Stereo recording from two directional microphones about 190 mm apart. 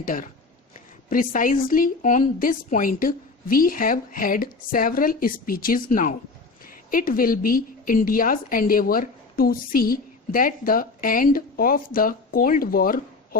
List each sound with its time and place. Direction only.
0.0 s a woman's voice: 45° left (ahead or behind)